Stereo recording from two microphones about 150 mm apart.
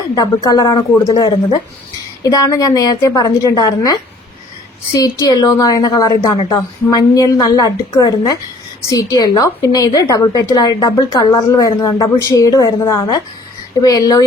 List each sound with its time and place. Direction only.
0.2 s a woman's voice: 25° left (ahead or behind)